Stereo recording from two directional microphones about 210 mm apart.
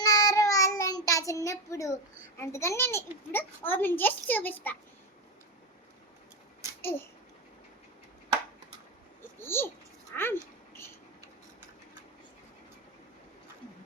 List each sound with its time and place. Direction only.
0.0 s child singing: 15° left (ahead or behind)
2.4 s a child's voice: 15° left (ahead or behind)
6.8 s a child's voice: 10° left (ahead or behind)
9.4 s a sound: 10° left (ahead or behind)